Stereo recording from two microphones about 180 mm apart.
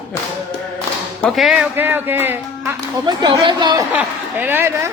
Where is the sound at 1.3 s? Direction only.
Centre (ahead or behind).